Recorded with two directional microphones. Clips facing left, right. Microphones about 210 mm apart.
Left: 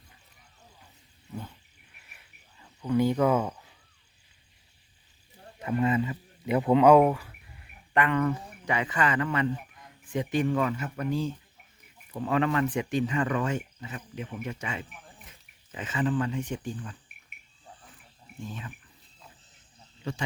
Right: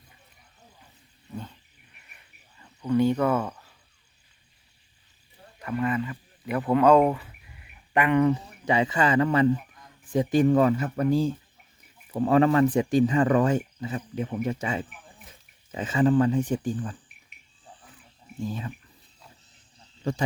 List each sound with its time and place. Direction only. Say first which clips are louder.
2.0 s cricket: right 1 dB; 5° left (ahead or behind)
5.5 s speech: left 1 dB; 25° left (ahead or behind)
6.9 s speech: even; centre (ahead or behind)
7.9 s speech: right 4 dB; 15° right (ahead or behind); by 17.0 s 35° right (ahead or behind)